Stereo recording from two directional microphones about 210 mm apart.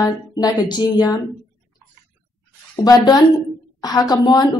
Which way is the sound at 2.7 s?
20° left (ahead or behind).